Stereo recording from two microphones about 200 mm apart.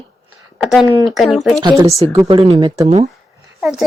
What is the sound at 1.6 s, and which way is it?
Speech, 20° right (ahead or behind).